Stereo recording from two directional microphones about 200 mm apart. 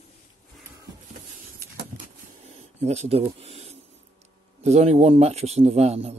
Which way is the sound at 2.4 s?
35° right (ahead or behind).